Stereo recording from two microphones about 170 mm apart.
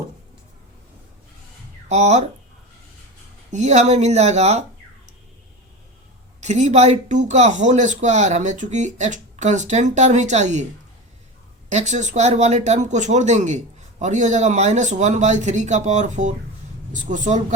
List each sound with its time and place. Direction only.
1.9 s speech: 40° right (ahead or behind)
3.5 s speech: 40° right (ahead or behind)
6.4 s speech: 40° right (ahead or behind)
11.7 s speech: 45° right (ahead or behind)